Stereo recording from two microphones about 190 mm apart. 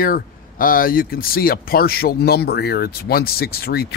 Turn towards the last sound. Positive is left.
turn(degrees=55)  # may be behind; listen again after turning